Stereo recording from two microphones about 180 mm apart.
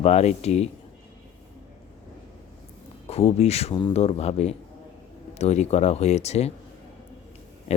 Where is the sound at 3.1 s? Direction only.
35° left (ahead or behind).